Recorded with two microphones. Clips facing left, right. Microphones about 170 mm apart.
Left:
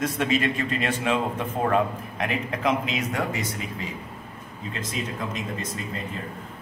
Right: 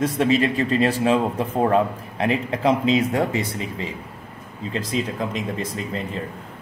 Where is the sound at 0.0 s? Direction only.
30° right (ahead or behind).